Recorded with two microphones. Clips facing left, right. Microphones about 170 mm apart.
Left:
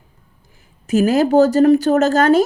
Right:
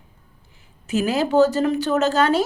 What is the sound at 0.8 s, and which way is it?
Speech, 40° left (ahead or behind).